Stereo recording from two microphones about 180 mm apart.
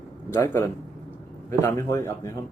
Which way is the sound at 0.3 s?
15° left (ahead or behind).